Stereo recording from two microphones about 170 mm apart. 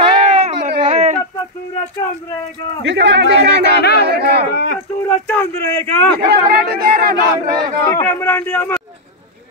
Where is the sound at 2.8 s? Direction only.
90° right.